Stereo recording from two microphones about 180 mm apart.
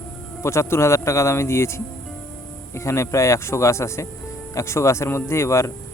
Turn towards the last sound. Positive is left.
turn(degrees=15)  # may be behind; listen again after turning